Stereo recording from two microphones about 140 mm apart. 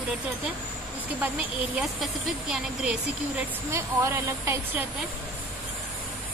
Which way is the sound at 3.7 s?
20° right (ahead or behind).